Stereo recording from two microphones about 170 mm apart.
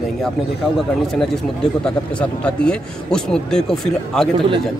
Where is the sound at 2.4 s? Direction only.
5° left (ahead or behind).